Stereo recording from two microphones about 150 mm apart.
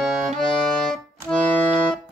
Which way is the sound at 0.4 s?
Centre (ahead or behind).